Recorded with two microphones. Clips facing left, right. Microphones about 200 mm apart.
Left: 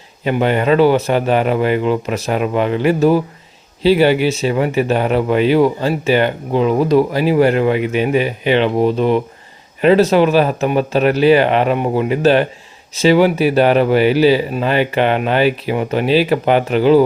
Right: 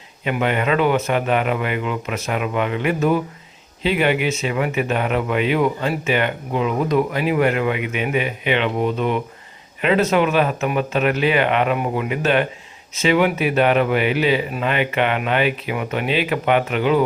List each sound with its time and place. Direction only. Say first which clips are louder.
0.3 s speech: left 6 dB; 35° left (ahead or behind)